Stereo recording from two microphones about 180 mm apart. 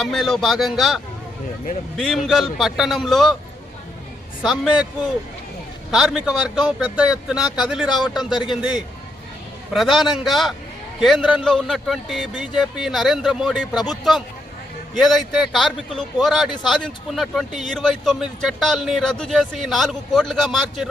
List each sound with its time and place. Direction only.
0.0 s a man's voice: centre (ahead or behind)
4.4 s a man's voice: 5° right (ahead or behind)
5.9 s a man's voice: 5° right (ahead or behind)
8.3 s speech: 25° left (ahead or behind)
9.7 s a man's voice: centre (ahead or behind)
14.9 s a man's voice: centre (ahead or behind)